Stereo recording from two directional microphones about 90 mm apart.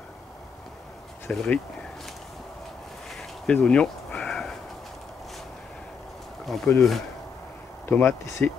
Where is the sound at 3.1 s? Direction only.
5° left (ahead or behind).